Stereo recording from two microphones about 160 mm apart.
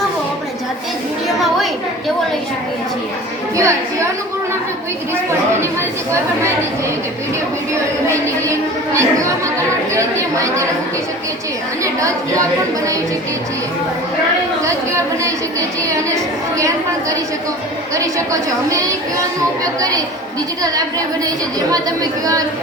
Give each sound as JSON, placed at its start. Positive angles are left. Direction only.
{"t": 3.6, "sound": "a woman's voice", "side_deg": -20}
{"t": 9.0, "sound": "a woman's voice", "side_deg": -20}
{"t": 11.8, "sound": "a woman's voice", "side_deg": -20}
{"t": 16.6, "sound": "a woman's voice", "side_deg": -20}